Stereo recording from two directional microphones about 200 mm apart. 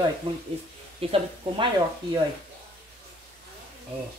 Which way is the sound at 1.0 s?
30° right (ahead or behind).